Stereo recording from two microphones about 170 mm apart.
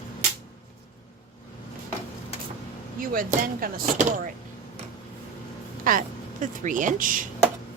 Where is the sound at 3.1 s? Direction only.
55° right (ahead or behind).